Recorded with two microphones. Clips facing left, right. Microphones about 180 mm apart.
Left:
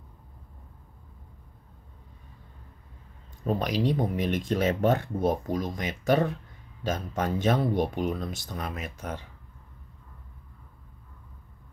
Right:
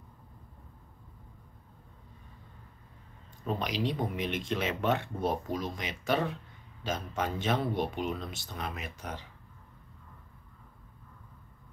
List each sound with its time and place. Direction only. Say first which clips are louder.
3.4 s speech: left 5 dB; 45° left (ahead or behind)